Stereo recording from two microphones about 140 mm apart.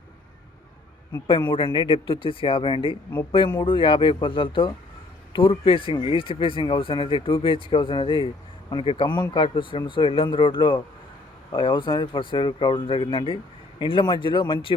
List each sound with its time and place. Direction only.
1.3 s speech: 35° left (ahead or behind)